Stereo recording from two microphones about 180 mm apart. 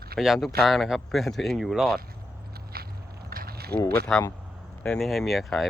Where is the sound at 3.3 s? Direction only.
55° right (ahead or behind).